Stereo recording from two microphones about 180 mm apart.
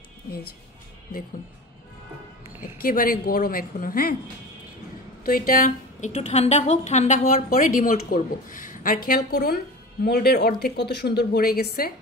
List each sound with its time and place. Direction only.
2.6 s a woman's voice: 50° left (ahead or behind)
5.2 s a woman's voice: 50° left (ahead or behind)